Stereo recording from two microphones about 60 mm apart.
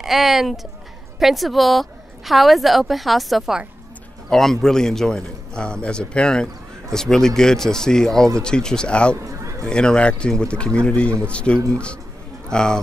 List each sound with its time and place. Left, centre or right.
0.0 s a woman's voice: centre
9.2 s a sound: right
9.7 s a man's voice: centre